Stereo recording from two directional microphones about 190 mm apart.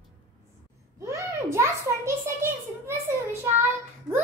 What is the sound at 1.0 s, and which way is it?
A child's voice, 15° right (ahead or behind).